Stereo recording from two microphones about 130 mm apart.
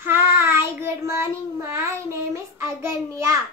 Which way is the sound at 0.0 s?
20° right (ahead or behind).